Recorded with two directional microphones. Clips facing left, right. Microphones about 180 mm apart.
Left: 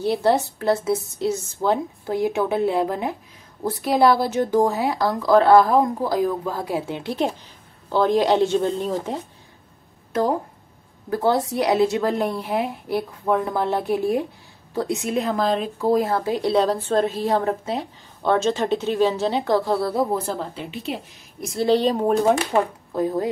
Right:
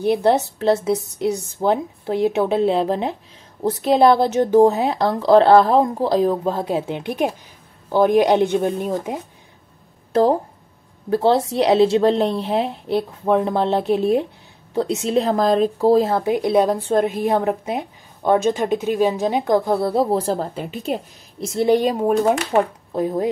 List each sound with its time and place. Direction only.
0.0 s a woman's voice: 20° right (ahead or behind)
11.1 s speech: 25° right (ahead or behind)
16.0 s a woman's voice: 20° right (ahead or behind)
20.5 s speech: 45° right (ahead or behind)
21.4 s a woman's voice: 25° right (ahead or behind); by 22.2 s 10° right (ahead or behind)
22.5 s speech: 20° right (ahead or behind)